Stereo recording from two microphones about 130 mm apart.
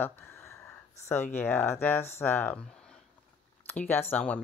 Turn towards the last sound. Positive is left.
turn(degrees=15)  # may be behind; listen again after turning